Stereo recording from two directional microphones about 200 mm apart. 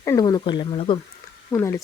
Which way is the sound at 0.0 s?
15° left (ahead or behind).